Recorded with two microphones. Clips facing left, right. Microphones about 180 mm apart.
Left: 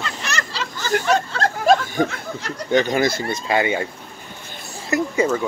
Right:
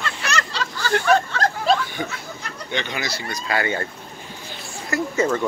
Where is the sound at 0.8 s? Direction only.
25° left (ahead or behind).